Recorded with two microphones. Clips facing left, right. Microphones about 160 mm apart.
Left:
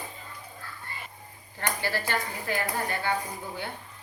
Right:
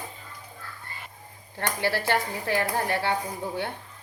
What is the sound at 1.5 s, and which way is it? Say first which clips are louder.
Speech: right 3 dB; 70° right (ahead or behind).